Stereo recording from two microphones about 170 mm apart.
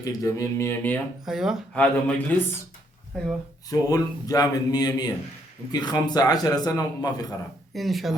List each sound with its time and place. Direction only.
0.0 s speech: 20° left (ahead or behind)
1.2 s speech: 5° right (ahead or behind)
1.8 s speech: 10° left (ahead or behind)
3.7 s a man's voice: 20° left (ahead or behind)
7.7 s speech: centre (ahead or behind)